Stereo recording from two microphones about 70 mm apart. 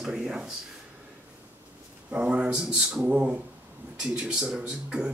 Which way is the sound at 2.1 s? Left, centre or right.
Centre.